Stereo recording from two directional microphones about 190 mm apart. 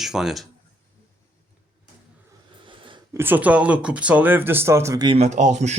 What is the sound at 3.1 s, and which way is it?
Speech, 10° right (ahead or behind).